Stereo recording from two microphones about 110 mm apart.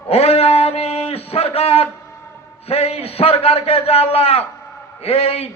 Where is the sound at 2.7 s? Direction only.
65° left (ahead or behind).